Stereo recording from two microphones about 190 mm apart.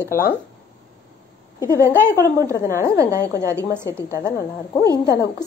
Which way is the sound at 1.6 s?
15° right (ahead or behind).